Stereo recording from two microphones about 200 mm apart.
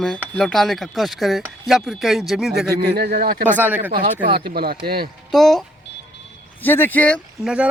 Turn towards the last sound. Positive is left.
turn(degrees=-5)  # may be behind; listen again after turning